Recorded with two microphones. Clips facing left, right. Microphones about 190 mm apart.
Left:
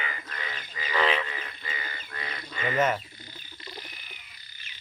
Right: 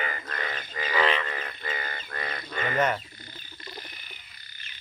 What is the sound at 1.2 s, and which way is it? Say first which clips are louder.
Livestock: right 5 dB; 55° right (ahead or behind).